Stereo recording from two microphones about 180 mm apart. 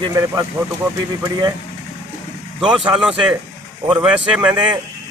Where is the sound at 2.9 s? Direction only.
5° right (ahead or behind).